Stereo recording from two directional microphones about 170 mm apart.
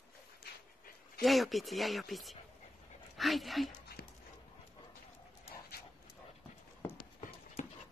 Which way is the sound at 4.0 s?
70° left (ahead or behind).